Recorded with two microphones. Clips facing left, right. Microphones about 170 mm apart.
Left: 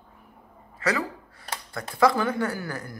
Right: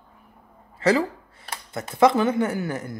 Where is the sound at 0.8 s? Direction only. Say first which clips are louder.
Right 7 dB; 25° right (ahead or behind).